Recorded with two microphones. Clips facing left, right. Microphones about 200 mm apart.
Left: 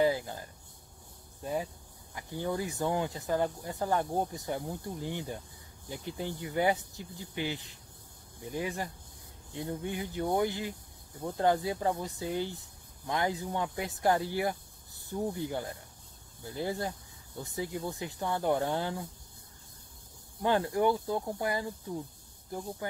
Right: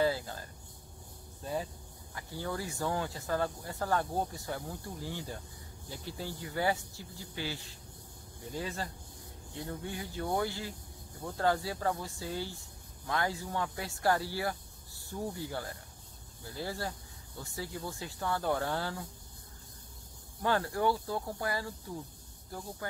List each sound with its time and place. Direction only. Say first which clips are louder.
0.0 s a sound: left 3 dB; 20° left (ahead or behind)
1.4 s speech: left 2 dB; 15° left (ahead or behind)
20.4 s speech: left 3 dB; 20° left (ahead or behind)